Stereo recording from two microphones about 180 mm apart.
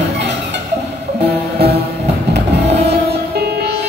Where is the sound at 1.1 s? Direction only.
65° right (ahead or behind).